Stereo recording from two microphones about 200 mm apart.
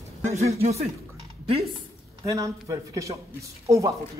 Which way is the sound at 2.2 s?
15° right (ahead or behind).